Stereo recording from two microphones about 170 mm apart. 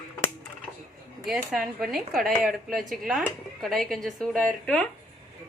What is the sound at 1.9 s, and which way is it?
A woman's voice, centre (ahead or behind).